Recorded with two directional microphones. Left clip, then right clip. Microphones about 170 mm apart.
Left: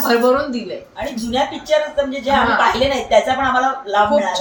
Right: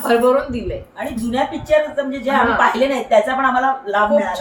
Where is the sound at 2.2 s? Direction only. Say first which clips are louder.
Even; 5° left (ahead or behind).